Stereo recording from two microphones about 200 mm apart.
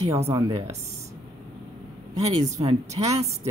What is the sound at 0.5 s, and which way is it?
Speech, 30° right (ahead or behind).